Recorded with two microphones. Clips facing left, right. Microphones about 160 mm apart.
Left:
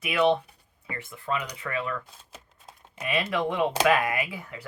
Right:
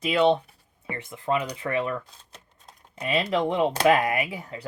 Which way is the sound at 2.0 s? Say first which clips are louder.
Left 2 dB; 5° left (ahead or behind).